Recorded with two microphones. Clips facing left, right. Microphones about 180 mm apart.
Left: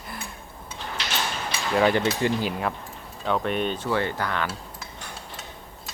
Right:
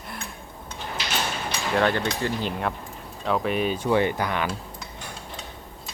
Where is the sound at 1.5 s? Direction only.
5° left (ahead or behind).